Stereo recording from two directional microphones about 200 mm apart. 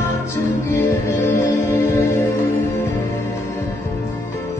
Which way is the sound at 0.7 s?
10° left (ahead or behind).